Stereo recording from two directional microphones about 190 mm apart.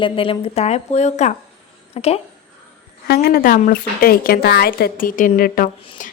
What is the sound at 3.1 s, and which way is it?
Speech, 55° left (ahead or behind).